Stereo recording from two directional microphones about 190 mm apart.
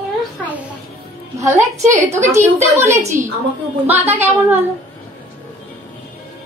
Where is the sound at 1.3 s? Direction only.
15° right (ahead or behind).